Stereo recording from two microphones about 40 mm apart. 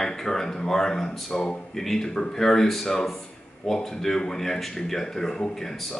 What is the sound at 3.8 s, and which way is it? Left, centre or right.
Speech, centre.